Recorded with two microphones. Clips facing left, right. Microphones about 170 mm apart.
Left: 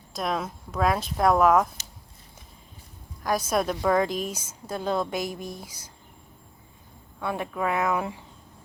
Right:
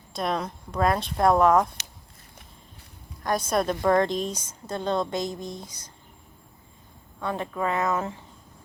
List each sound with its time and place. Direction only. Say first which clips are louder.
0.1 s a woman's voice: right 1 dB; centre (ahead or behind)
3.2 s a woman's voice: even; centre (ahead or behind)
7.2 s speech: even; 10° left (ahead or behind)